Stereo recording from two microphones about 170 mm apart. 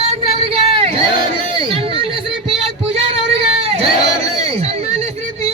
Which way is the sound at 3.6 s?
35° right (ahead or behind).